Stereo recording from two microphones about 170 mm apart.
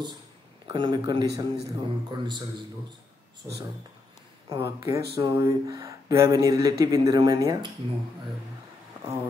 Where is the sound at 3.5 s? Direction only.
25° right (ahead or behind).